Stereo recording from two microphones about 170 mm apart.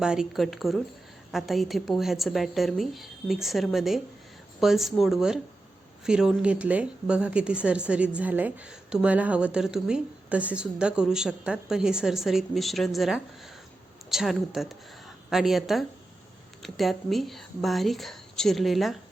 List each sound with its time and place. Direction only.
0.0 s a woman's voice: 5° right (ahead or behind)